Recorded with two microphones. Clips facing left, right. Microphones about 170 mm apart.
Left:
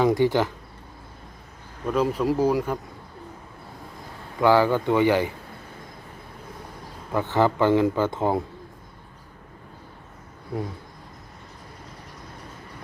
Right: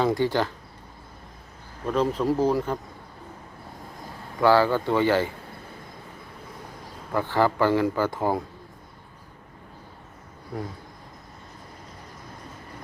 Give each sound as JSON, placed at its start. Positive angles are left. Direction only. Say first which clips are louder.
{"t": 0.0, "sound": "speech", "louder": "left 3 dB", "side_deg": 15}
{"t": 1.9, "sound": "speech", "louder": "left 1 dB", "side_deg": 10}
{"t": 4.4, "sound": "speech", "louder": "left 1 dB", "side_deg": 15}
{"t": 7.1, "sound": "speech", "louder": "left 1 dB", "side_deg": 20}